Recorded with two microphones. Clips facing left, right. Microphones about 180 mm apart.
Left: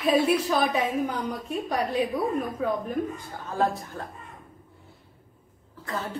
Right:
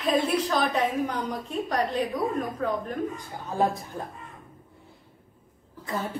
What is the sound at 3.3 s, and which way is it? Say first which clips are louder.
Speech: even; 15° right (ahead or behind).